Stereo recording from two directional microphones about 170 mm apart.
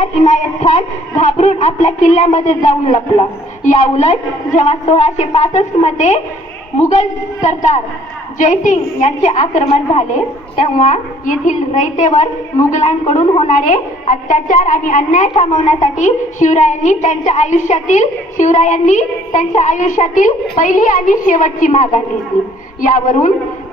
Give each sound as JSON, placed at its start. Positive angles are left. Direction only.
{"t": 0.0, "sound": "a man's voice", "side_deg": 45}